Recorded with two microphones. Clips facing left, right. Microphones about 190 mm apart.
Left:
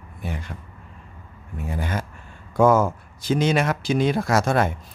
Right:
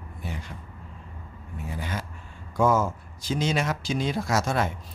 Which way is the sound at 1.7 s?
50° left (ahead or behind).